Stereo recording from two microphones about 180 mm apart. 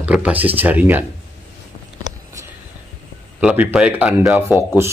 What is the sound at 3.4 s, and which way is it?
Speech, 5° right (ahead or behind).